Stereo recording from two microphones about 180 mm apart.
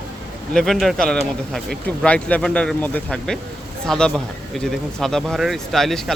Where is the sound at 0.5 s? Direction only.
Centre (ahead or behind).